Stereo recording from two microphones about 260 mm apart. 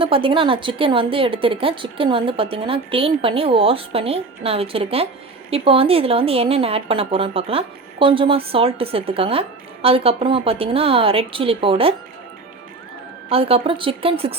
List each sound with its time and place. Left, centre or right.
0.0 s speech: centre
13.3 s speech: right